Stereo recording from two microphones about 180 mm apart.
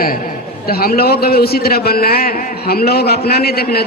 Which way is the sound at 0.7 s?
60° left (ahead or behind).